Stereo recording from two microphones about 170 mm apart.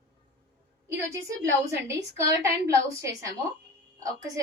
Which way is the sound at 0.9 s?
15° right (ahead or behind).